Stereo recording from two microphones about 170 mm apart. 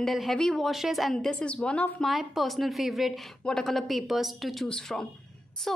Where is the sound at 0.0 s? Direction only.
Centre (ahead or behind).